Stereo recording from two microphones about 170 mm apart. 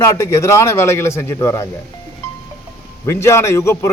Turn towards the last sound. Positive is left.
turn(degrees=15)  # may be behind; listen again after turning